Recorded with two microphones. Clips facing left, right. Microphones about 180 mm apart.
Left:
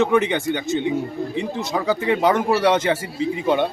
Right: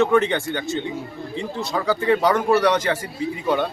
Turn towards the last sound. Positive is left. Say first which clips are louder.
# left 2 dB
turn(degrees=20)  # may be behind; listen again after turning